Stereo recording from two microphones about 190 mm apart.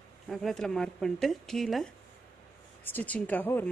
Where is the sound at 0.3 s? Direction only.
Centre (ahead or behind).